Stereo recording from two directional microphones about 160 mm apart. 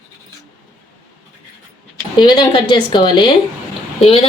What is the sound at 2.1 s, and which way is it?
A woman's voice, 30° left (ahead or behind).